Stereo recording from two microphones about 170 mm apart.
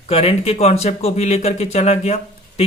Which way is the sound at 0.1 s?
35° left (ahead or behind).